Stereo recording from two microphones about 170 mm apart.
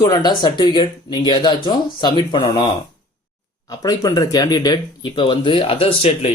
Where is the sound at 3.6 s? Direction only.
20° left (ahead or behind).